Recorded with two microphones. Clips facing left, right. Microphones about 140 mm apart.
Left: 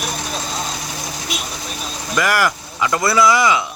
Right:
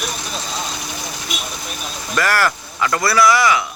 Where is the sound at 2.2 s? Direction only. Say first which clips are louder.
Even; 15° left (ahead or behind).